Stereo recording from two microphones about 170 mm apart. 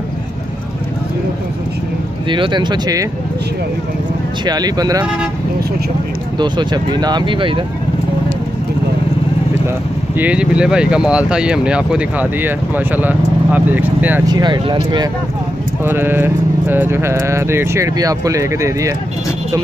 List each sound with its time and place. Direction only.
2.2 s speech: 30° right (ahead or behind)
4.5 s speech: 25° right (ahead or behind)
6.3 s speech: 25° right (ahead or behind)
10.1 s speech: 10° right (ahead or behind)
14.2 s speech: 25° right (ahead or behind)
15.8 s speech: 10° right (ahead or behind)